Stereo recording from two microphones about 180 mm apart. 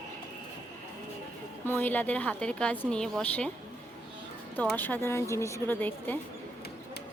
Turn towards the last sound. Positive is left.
turn(degrees=10)  # may be behind; listen again after turning